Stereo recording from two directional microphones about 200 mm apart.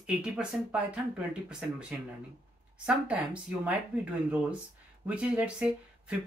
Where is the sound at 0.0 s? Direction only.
5° right (ahead or behind).